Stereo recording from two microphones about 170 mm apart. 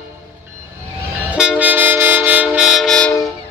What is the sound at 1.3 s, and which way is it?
Train, 5° right (ahead or behind).